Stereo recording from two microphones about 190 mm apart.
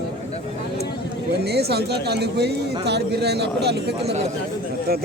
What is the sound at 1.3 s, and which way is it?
Speech, 60° right (ahead or behind).